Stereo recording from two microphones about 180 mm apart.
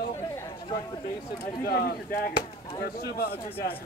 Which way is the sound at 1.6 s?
55° left (ahead or behind).